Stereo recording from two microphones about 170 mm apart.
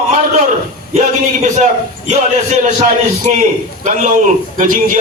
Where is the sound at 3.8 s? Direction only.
45° right (ahead or behind).